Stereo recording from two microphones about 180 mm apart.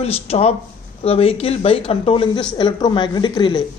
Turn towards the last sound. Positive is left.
turn(degrees=25)  # may be behind; listen again after turning